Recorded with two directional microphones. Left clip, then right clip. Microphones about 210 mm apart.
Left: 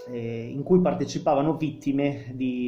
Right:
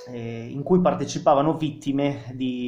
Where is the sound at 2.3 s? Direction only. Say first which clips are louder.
Right 1 dB; 50° right (ahead or behind).